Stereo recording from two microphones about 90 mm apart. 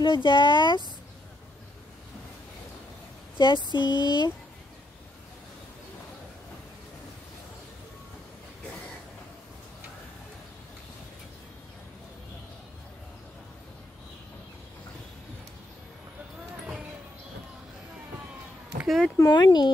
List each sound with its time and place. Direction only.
0.0 s speech: 60° left (ahead or behind)
3.3 s a sound: 60° left (ahead or behind)
3.7 s speech: 60° left (ahead or behind)
18.9 s speech: centre (ahead or behind)
19.1 s speech: 45° left (ahead or behind)